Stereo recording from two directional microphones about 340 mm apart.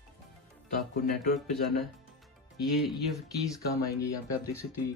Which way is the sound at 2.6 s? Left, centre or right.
Centre.